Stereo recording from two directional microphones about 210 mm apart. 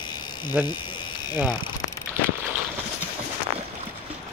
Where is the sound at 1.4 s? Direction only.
20° left (ahead or behind).